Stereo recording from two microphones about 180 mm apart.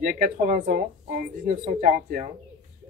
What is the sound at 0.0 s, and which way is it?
Speech, 45° right (ahead or behind).